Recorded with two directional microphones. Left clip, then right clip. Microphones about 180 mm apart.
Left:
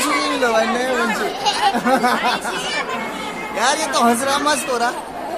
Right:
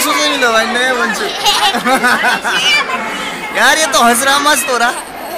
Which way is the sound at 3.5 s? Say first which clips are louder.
Right 8 dB; 5° right (ahead or behind).